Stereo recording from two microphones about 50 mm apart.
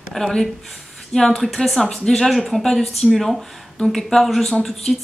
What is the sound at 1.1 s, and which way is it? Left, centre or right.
A woman's voice, centre.